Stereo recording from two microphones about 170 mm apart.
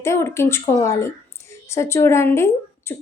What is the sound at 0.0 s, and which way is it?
A woman's voice, 15° left (ahead or behind).